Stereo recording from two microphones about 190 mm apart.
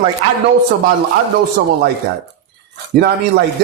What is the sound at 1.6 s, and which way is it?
Speech, 50° right (ahead or behind).